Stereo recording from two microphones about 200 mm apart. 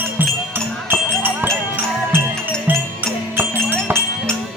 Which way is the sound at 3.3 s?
10° right (ahead or behind).